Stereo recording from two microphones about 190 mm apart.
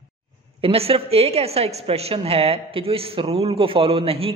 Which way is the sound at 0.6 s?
30° right (ahead or behind).